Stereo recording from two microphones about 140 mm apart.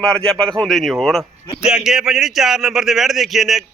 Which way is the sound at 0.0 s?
5° left (ahead or behind).